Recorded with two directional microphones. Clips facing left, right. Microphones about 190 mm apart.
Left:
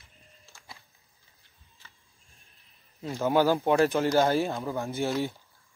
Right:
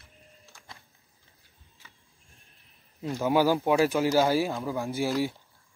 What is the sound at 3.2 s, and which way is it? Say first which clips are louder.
Speech: even; 10° right (ahead or behind).